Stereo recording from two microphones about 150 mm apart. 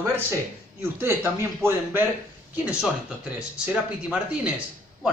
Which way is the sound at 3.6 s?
10° right (ahead or behind).